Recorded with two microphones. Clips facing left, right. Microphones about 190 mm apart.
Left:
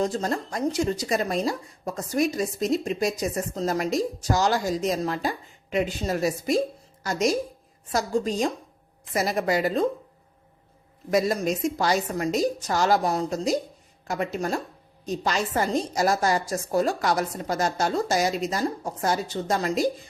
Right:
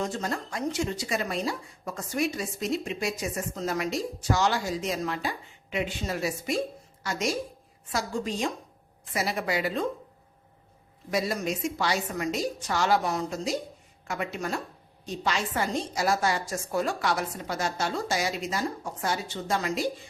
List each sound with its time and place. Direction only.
0.0 s a woman's voice: 35° left (ahead or behind)
11.1 s speech: 45° left (ahead or behind)